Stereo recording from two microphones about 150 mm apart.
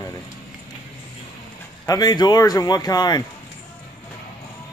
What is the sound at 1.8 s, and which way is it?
Speech, 25° left (ahead or behind).